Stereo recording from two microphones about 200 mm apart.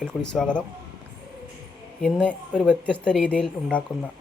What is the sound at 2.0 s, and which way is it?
Speech, 5° left (ahead or behind).